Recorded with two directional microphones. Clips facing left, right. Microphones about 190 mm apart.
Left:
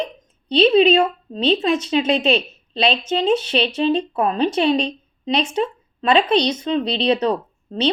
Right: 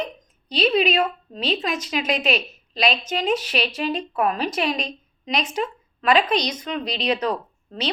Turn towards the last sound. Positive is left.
turn(degrees=30)  # may be behind; listen again after turning